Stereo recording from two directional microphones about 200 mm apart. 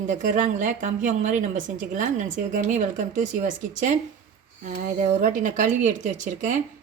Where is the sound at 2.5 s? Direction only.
40° right (ahead or behind).